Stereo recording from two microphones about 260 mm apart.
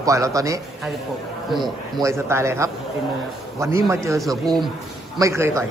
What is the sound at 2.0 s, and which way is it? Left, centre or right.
Speech, centre.